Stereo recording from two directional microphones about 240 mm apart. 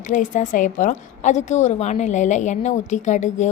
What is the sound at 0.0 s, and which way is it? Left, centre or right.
A woman's voice, left.